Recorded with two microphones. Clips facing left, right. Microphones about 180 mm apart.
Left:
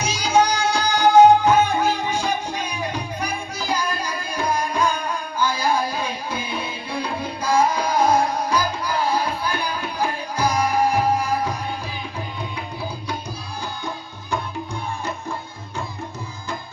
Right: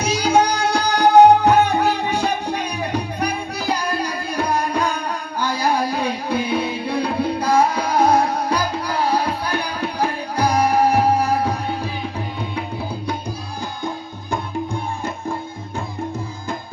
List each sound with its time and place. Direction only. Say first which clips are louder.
0.0 s music: right 2 dB; 60° right (ahead or behind)